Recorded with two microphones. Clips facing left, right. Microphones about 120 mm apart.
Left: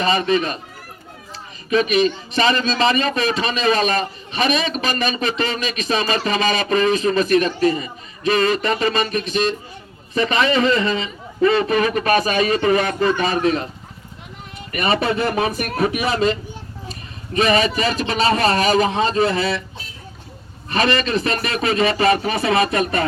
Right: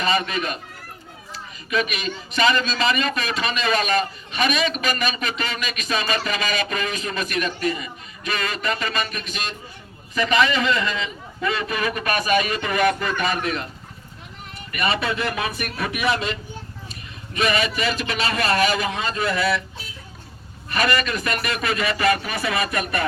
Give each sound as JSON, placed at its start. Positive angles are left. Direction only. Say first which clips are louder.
{"t": 0.0, "sound": "a man's voice", "louder": "left 5 dB", "side_deg": 40}
{"t": 1.7, "sound": "a man's voice", "louder": "left 8 dB", "side_deg": 35}
{"t": 14.7, "sound": "speech", "louder": "left 4 dB", "side_deg": 45}
{"t": 15.3, "sound": "a man's voice", "louder": "left 6 dB", "side_deg": 35}
{"t": 20.7, "sound": "a man's voice", "louder": "left 3 dB", "side_deg": 30}